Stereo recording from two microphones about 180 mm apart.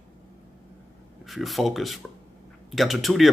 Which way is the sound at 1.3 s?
Centre (ahead or behind).